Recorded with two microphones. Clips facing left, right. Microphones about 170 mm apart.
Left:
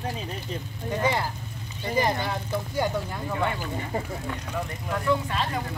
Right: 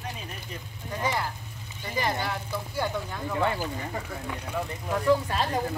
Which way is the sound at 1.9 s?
25° left (ahead or behind).